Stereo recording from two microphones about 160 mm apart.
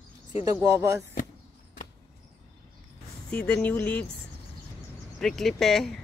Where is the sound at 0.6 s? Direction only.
20° right (ahead or behind).